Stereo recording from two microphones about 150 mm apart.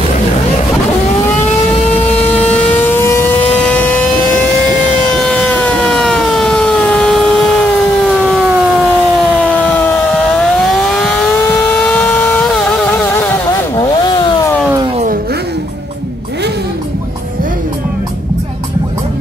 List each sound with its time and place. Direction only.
2.0 s vehicle: 10° left (ahead or behind)
5.1 s siren: 5° left (ahead or behind)
8.2 s a sound: 5° right (ahead or behind); by 10.2 s 10° left (ahead or behind)
10.6 s vehicle: centre (ahead or behind)
13.5 s vehicle: 30° left (ahead or behind)